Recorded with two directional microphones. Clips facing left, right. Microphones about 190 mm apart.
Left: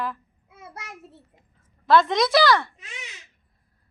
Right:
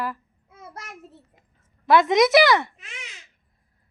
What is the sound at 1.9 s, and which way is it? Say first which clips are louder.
Speech: right 2 dB; 15° right (ahead or behind).